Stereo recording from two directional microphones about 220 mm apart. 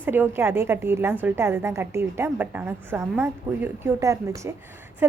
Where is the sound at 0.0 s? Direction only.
10° right (ahead or behind).